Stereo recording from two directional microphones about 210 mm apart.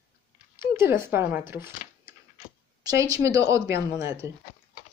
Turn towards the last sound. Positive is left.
turn(degrees=-15)  # may be behind; listen again after turning